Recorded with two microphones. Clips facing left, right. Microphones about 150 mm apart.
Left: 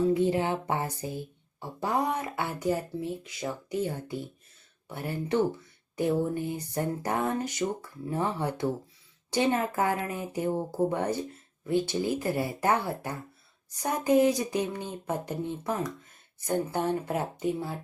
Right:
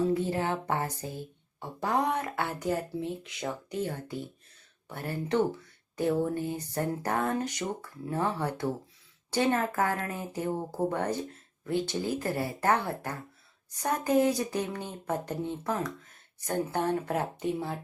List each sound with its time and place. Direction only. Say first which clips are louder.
0.1 s speech: left 3 dB; 15° left (ahead or behind)